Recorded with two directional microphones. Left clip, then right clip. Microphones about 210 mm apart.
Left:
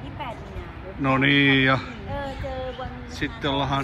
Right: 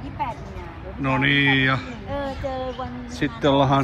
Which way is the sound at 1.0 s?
5° left (ahead or behind).